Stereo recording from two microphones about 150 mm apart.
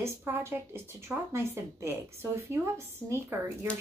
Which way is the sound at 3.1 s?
15° right (ahead or behind).